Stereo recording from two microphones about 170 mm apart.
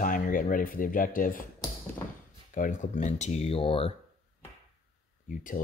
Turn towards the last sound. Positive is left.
turn(degrees=50)  # may be behind; listen again after turning